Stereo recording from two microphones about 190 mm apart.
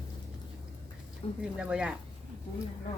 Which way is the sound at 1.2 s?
30° left (ahead or behind).